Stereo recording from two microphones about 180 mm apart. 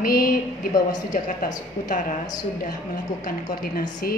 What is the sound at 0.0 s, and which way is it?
A woman's voice, 50° left (ahead or behind).